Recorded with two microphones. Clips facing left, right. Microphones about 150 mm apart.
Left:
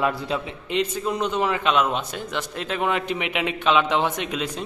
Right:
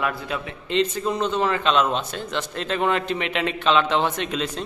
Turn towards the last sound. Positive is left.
turn(degrees=10)  # may be behind; listen again after turning